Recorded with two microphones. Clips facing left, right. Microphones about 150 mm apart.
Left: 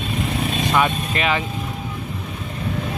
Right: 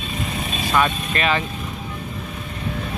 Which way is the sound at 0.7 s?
15° left (ahead or behind).